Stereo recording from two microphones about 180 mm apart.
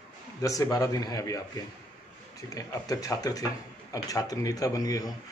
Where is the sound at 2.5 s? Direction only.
20° left (ahead or behind).